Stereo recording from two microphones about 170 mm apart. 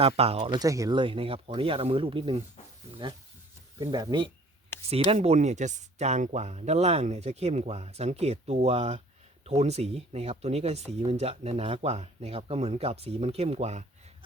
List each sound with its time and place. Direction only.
0.2 s speech: 35° right (ahead or behind)
0.6 s speech: 20° right (ahead or behind)
3.8 s speech: 25° right (ahead or behind)
4.7 s a sound: 15° left (ahead or behind)
5.1 s speech: 40° right (ahead or behind)